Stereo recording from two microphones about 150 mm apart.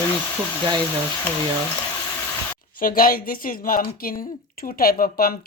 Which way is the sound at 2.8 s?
75° left (ahead or behind).